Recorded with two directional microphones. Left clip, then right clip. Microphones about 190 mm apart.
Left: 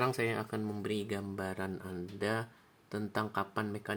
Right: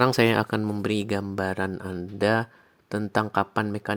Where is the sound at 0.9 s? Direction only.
55° right (ahead or behind).